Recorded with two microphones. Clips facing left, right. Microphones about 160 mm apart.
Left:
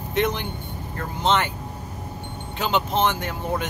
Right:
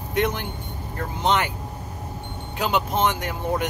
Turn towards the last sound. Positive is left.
turn(degrees=-15)  # may be behind; listen again after turning